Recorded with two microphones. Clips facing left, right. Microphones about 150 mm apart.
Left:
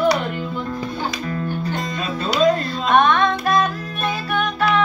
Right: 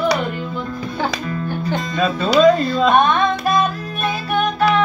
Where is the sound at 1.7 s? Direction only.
90° right.